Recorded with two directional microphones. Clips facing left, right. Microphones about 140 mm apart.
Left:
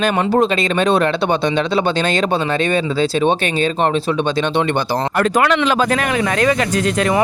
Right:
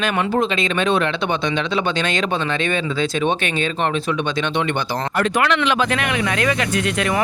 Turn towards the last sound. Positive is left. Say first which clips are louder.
# left 4 dB
turn(degrees=35)  # may be behind; listen again after turning